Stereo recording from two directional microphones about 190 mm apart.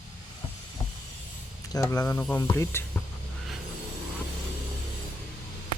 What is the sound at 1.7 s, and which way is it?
Speech, 15° left (ahead or behind).